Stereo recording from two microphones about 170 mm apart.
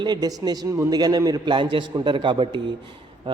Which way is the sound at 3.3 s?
30° right (ahead or behind).